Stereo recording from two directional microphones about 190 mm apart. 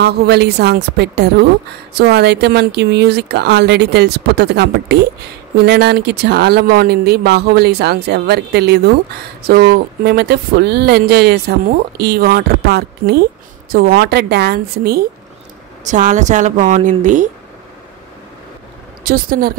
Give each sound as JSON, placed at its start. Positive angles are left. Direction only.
{"t": 0.0, "sound": "speech", "side_deg": -60}
{"t": 15.8, "sound": "speech", "side_deg": -40}
{"t": 19.0, "sound": "a woman's voice", "side_deg": -50}